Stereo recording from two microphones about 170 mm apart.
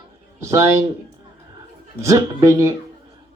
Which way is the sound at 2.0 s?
20° right (ahead or behind).